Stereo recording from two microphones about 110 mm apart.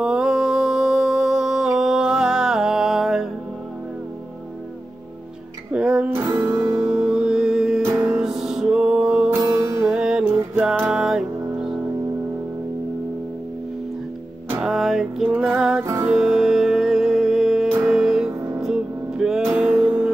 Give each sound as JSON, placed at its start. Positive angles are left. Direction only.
{"t": 0.0, "sound": "music", "side_deg": -5}
{"t": 5.7, "sound": "music", "side_deg": -10}
{"t": 6.0, "sound": "music", "side_deg": -20}
{"t": 6.9, "sound": "music", "side_deg": -5}
{"t": 7.8, "sound": "music", "side_deg": -25}
{"t": 8.2, "sound": "music", "side_deg": -5}
{"t": 14.6, "sound": "music", "side_deg": -5}
{"t": 15.8, "sound": "music", "side_deg": -25}
{"t": 16.1, "sound": "music", "side_deg": -5}